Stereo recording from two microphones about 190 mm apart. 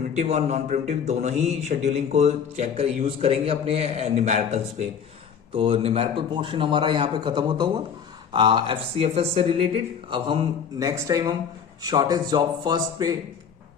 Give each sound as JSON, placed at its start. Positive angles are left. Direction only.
{"t": 0.1, "sound": "speech", "side_deg": -35}